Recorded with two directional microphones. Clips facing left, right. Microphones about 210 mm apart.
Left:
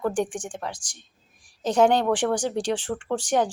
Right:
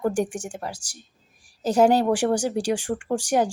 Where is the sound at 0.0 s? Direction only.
10° right (ahead or behind).